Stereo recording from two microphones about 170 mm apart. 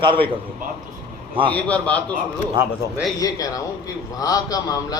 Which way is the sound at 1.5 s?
10° left (ahead or behind).